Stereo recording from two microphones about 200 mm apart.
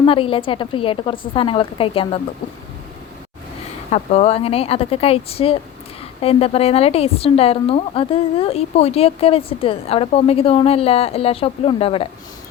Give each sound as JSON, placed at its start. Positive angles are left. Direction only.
{"t": 0.0, "sound": "a woman's voice", "side_deg": 25}
{"t": 3.9, "sound": "a woman's voice", "side_deg": 30}